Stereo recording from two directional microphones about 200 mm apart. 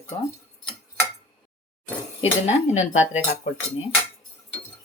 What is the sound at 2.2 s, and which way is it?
Speech, 35° left (ahead or behind).